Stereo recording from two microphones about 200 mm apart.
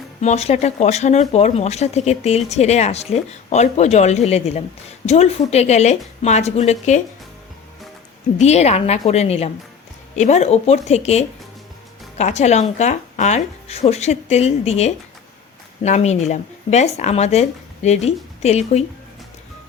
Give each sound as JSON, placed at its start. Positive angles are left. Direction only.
{"t": 0.2, "sound": "speech", "side_deg": 35}
{"t": 8.4, "sound": "speech", "side_deg": 35}